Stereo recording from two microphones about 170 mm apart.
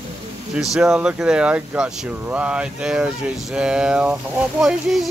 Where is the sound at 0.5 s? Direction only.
5° right (ahead or behind).